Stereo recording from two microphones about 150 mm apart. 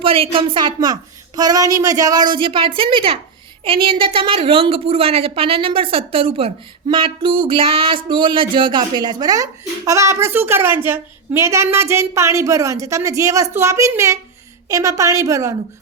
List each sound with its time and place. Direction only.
0.0 s a woman's voice: 35° right (ahead or behind)
2.3 s a woman's voice: 35° right (ahead or behind)